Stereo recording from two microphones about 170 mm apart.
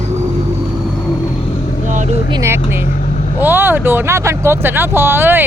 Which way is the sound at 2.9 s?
45° left (ahead or behind).